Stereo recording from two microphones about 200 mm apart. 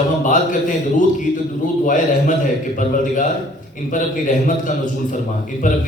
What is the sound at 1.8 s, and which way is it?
A man's voice, 40° left (ahead or behind).